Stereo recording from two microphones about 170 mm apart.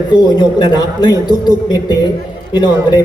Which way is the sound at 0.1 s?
25° left (ahead or behind).